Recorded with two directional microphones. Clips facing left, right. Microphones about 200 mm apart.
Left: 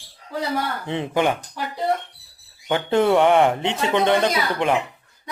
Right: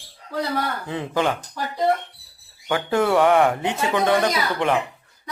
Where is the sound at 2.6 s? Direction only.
20° left (ahead or behind).